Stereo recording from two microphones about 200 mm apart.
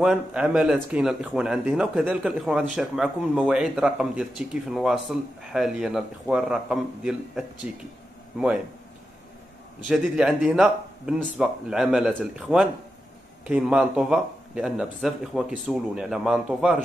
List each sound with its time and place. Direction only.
0.0 s speech: centre (ahead or behind)
9.8 s speech: 5° right (ahead or behind)